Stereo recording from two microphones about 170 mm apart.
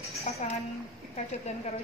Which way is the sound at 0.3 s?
40° left (ahead or behind).